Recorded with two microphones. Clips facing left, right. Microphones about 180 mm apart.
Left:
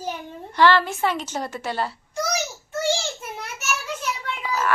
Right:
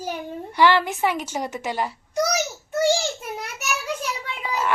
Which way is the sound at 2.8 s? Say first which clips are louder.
Right 3 dB; 15° right (ahead or behind).